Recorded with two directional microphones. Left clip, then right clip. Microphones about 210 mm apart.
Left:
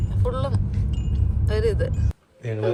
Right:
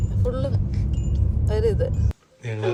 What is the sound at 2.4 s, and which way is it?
Speech, centre (ahead or behind).